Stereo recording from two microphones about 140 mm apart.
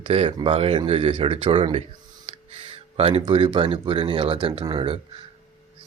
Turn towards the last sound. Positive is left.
turn(degrees=-40)  # may be behind; listen again after turning